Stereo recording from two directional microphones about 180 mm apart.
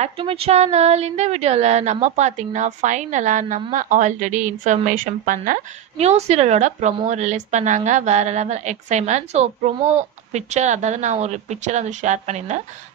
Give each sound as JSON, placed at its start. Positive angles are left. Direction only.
{"t": 0.0, "sound": "speech", "side_deg": -30}